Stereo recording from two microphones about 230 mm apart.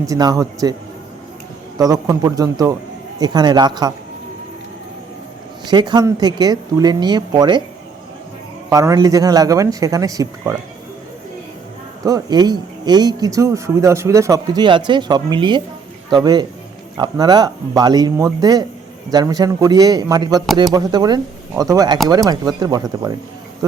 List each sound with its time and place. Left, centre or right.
0.0 s speech: centre
1.8 s speech: centre
5.6 s speech: centre
8.7 s speech: centre
12.0 s a man's voice: centre